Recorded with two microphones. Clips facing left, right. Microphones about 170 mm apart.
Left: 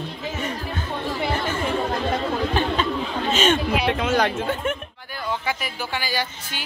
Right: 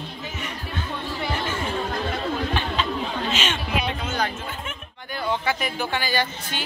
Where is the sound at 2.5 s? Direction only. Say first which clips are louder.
Left 3 dB; 40° left (ahead or behind).